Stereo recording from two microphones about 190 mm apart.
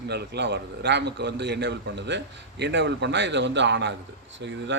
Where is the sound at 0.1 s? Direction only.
65° right (ahead or behind).